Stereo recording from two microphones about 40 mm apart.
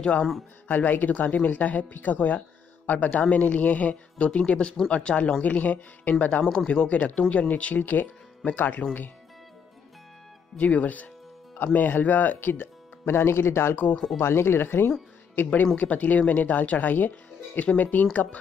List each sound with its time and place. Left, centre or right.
0.7 s speech: left
6.4 s speech: centre
6.7 s speech: left
10.6 s speech: left
11.5 s speech: left
14.2 s speech: left
15.3 s speech: left
17.1 s speech: left